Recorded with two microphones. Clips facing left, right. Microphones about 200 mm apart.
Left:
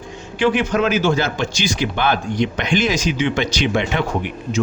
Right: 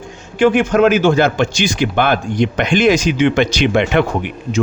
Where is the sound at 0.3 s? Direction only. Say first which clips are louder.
Right 5 dB; 50° right (ahead or behind).